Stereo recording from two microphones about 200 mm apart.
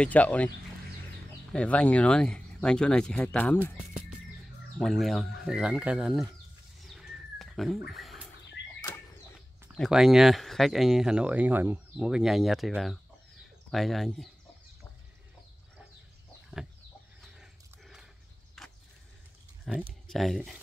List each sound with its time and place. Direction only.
0.0 s speech: 5° left (ahead or behind)
1.5 s speech: 5° left (ahead or behind)
4.7 s speech: centre (ahead or behind)
6.8 s bird: centre (ahead or behind)
8.6 s a sound: 60° left (ahead or behind)
9.8 s speech: centre (ahead or behind)
17.4 s dog: centre (ahead or behind)
18.6 s a sound: centre (ahead or behind)
19.6 s speech: centre (ahead or behind)